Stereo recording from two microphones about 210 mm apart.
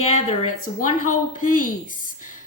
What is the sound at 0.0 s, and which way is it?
A woman's voice, 35° left (ahead or behind).